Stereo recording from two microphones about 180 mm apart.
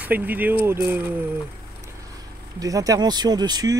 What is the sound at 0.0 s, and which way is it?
Speech, 10° right (ahead or behind).